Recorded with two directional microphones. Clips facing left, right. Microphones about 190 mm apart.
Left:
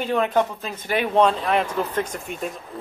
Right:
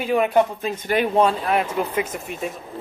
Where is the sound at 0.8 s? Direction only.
45° right (ahead or behind).